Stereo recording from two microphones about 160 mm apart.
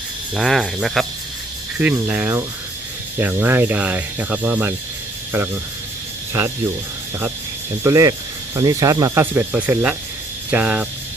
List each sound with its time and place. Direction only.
0.3 s speech: centre (ahead or behind)
7.9 s speech: 20° right (ahead or behind)